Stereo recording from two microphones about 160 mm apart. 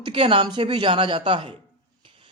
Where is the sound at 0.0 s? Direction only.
35° right (ahead or behind).